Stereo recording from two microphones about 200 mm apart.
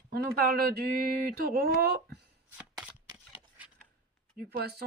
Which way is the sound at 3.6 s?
5° right (ahead or behind).